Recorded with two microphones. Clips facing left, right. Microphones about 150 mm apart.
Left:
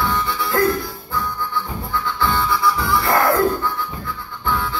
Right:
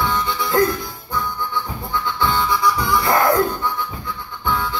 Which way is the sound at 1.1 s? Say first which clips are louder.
Right 1 dB; 20° right (ahead or behind).